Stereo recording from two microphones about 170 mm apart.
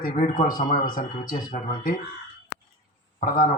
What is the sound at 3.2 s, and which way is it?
Speech, 55° left (ahead or behind).